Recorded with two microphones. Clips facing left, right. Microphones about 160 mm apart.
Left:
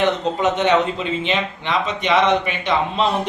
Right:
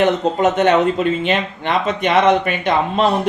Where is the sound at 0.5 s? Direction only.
50° right (ahead or behind).